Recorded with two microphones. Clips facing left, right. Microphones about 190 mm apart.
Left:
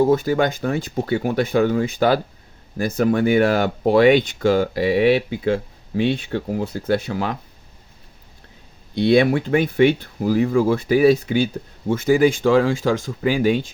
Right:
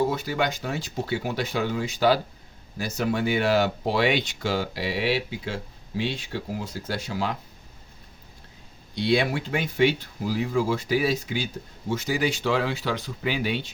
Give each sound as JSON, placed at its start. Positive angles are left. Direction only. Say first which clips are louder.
{"t": 0.1, "sound": "speech", "louder": "left 9 dB", "side_deg": 50}
{"t": 9.0, "sound": "speech", "louder": "left 8 dB", "side_deg": 55}